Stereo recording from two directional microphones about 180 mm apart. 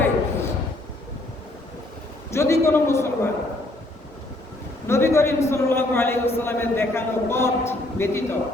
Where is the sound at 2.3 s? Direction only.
15° left (ahead or behind).